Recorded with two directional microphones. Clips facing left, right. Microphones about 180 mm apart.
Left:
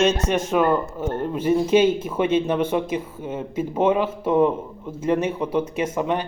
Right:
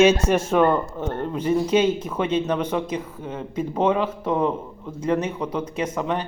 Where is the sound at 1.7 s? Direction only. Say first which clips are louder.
Left 3 dB; 25° left (ahead or behind).